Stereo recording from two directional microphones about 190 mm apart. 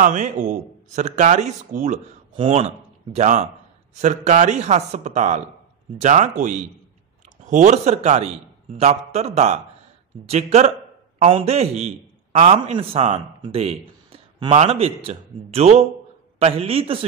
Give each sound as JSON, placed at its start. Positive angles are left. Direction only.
{"t": 0.0, "sound": "a man's voice", "side_deg": -40}